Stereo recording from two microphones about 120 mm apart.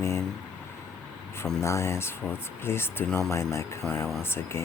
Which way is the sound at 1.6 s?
25° left (ahead or behind).